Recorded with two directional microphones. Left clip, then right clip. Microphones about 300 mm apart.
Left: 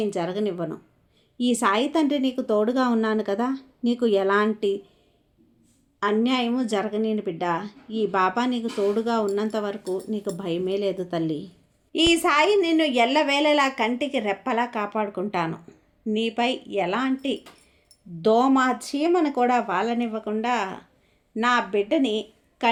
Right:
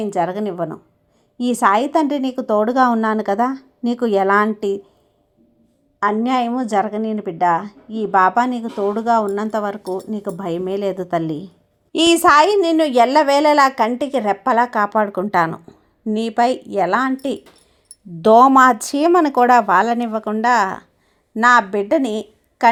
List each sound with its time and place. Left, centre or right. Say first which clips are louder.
0.0 s a woman's voice: right 6 dB; centre
6.0 s a woman's voice: right 6 dB; centre